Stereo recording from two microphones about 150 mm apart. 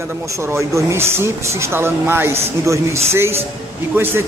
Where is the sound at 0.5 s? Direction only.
20° right (ahead or behind).